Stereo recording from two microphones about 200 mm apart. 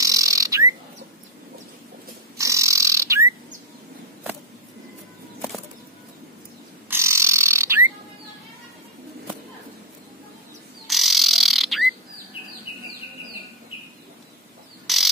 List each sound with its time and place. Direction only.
0.0 s bird: 15° right (ahead or behind)
2.3 s bird: 15° right (ahead or behind)
6.9 s a sound: 15° right (ahead or behind)
10.9 s frog: centre (ahead or behind)
14.9 s bird: centre (ahead or behind)